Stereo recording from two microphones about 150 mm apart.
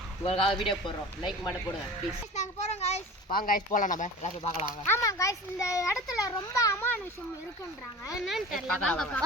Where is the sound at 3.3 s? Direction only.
70° left (ahead or behind); by 4.3 s 55° left (ahead or behind).